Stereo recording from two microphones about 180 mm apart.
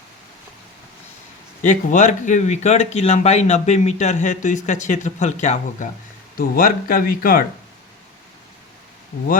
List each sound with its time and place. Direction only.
1.6 s speech: 45° left (ahead or behind)
6.3 s speech: 55° left (ahead or behind)